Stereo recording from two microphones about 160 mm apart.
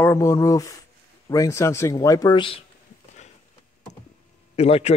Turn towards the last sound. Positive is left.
turn(degrees=40)  # may be behind; listen again after turning